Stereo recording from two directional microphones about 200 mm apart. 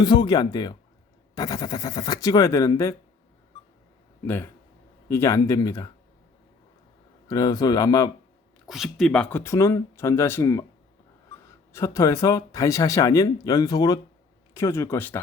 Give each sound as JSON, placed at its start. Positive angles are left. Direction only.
{"t": 0.0, "sound": "speech", "side_deg": 20}
{"t": 4.3, "sound": "speech", "side_deg": 10}
{"t": 7.3, "sound": "speech", "side_deg": 20}
{"t": 8.6, "sound": "speech", "side_deg": 0}
{"t": 11.7, "sound": "speech", "side_deg": 15}